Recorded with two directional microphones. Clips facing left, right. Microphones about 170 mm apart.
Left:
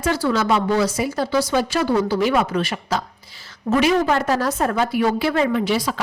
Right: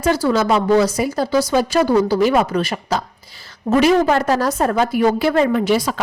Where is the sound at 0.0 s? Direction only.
40° right (ahead or behind).